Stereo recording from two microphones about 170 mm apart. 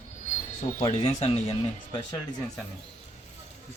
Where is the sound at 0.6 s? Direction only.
45° left (ahead or behind).